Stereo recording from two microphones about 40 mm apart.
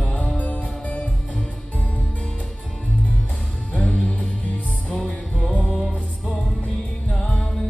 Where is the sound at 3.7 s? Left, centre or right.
Left.